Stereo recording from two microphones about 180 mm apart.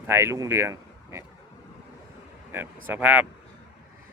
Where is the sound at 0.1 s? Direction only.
15° right (ahead or behind).